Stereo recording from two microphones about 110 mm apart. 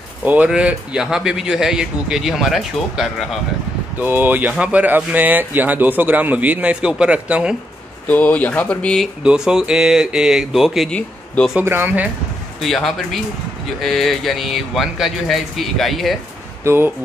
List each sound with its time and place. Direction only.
0.2 s a man's voice: 15° right (ahead or behind)
4.0 s speech: 15° right (ahead or behind)
8.1 s speech: 15° left (ahead or behind)
9.2 s a man's voice: 5° right (ahead or behind)
10.9 s speech: 10° left (ahead or behind)
11.6 s speech: 20° right (ahead or behind)
12.6 s a man's voice: centre (ahead or behind)
16.6 s speech: 20° right (ahead or behind)